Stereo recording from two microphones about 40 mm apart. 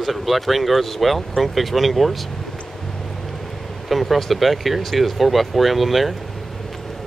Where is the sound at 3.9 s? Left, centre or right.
Centre.